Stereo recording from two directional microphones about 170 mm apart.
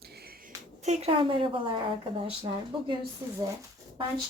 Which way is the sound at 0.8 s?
40° right (ahead or behind).